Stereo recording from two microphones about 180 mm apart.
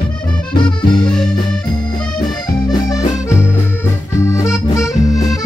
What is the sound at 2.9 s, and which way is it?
Accordion, 20° left (ahead or behind).